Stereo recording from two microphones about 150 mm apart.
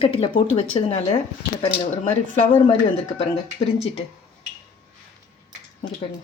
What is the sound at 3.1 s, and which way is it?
Speech, 45° left (ahead or behind).